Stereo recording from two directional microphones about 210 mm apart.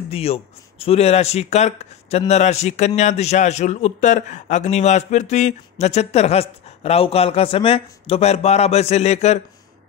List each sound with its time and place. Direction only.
0.1 s a man's voice: 30° left (ahead or behind)